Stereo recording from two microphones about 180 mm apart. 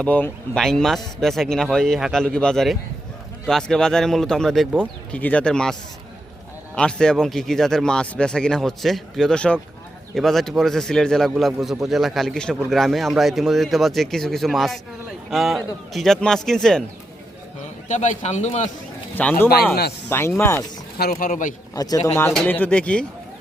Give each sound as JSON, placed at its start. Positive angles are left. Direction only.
{"t": 0.0, "sound": "speech", "side_deg": 5}
{"t": 6.7, "sound": "speech", "side_deg": 5}
{"t": 17.8, "sound": "speech", "side_deg": 40}
{"t": 19.1, "sound": "speech", "side_deg": 10}
{"t": 21.0, "sound": "speech", "side_deg": 50}
{"t": 21.8, "sound": "speech", "side_deg": 20}
{"t": 22.3, "sound": "speech", "side_deg": 5}